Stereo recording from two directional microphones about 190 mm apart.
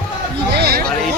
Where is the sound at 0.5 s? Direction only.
55° right (ahead or behind).